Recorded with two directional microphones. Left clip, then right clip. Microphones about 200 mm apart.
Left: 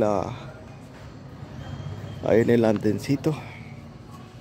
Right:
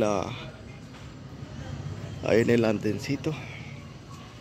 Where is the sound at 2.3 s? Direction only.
10° left (ahead or behind).